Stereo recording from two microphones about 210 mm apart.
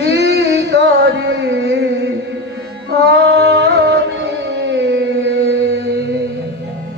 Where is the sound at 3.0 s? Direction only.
55° right (ahead or behind).